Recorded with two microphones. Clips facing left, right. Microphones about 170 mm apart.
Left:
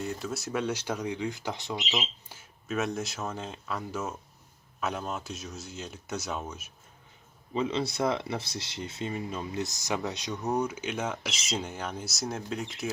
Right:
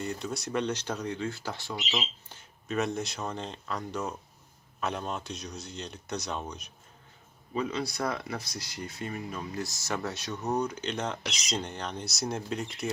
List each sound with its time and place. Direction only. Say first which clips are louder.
0.0 s speech: even; centre (ahead or behind); by 2.0 s 20° left (ahead or behind)
2.0 s speech: left 1 dB; centre (ahead or behind)
7.5 s speech: left 2 dB; 25° left (ahead or behind); by 12.9 s centre (ahead or behind)